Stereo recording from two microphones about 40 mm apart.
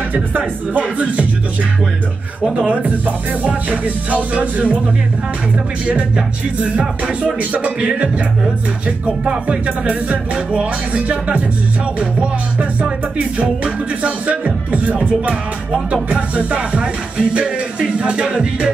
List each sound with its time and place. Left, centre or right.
0.4 s music: right
2.5 s music: right
5.9 s music: right